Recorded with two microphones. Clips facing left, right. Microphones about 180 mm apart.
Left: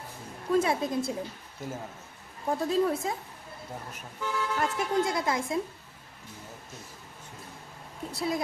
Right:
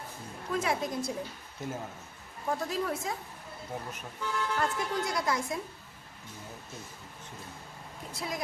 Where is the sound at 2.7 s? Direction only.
30° left (ahead or behind).